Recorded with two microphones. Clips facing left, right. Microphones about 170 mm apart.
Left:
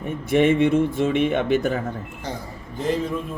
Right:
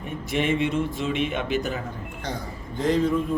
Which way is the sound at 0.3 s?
55° left (ahead or behind).